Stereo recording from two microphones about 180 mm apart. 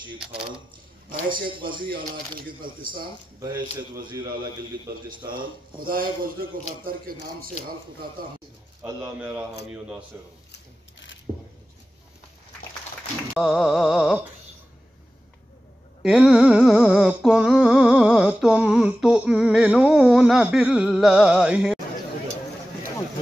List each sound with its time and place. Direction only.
1.7 s speech: 25° right (ahead or behind)
3.3 s speech: 20° right (ahead or behind)
5.8 s speech: 55° right (ahead or behind)
8.8 s a man's voice: 10° right (ahead or behind)
10.5 s sewing machine: 85° left
13.3 s a sound: centre (ahead or behind)
16.0 s a sound: 5° right (ahead or behind)